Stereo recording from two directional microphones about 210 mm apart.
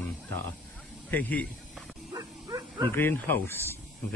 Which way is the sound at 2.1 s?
15° right (ahead or behind).